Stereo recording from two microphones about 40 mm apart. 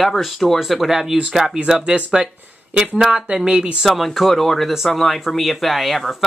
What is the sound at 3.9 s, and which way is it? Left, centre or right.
Speech, centre.